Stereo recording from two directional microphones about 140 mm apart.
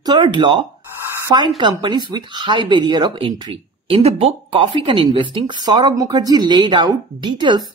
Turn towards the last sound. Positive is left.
turn(degrees=-35)  # may be behind; listen again after turning